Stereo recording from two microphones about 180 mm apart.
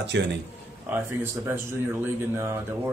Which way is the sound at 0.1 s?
75° right (ahead or behind).